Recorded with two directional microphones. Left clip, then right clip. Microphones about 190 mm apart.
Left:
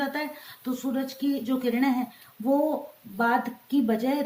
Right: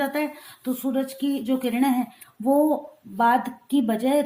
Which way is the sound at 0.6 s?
25° right (ahead or behind).